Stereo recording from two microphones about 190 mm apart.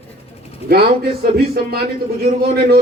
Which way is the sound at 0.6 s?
55° right (ahead or behind).